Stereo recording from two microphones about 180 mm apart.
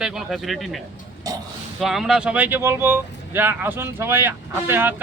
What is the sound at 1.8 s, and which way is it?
Speech, centre (ahead or behind).